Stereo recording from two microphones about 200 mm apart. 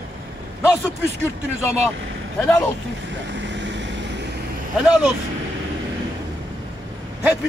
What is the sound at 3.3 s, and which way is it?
Vehicle, 60° right (ahead or behind).